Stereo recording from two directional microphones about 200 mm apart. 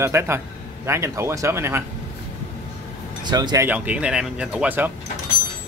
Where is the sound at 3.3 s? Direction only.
20° right (ahead or behind).